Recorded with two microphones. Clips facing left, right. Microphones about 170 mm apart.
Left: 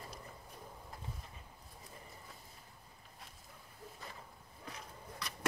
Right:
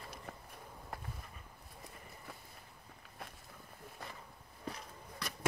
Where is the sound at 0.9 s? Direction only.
70° right (ahead or behind).